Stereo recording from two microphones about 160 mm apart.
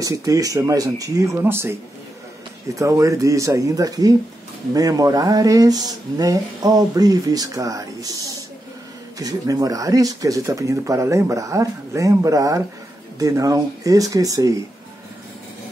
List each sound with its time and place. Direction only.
0.0 s speech: 20° right (ahead or behind)